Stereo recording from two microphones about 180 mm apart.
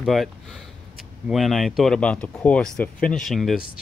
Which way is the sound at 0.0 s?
Centre (ahead or behind).